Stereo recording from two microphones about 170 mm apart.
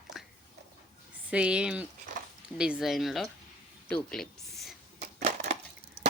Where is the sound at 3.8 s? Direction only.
5° left (ahead or behind).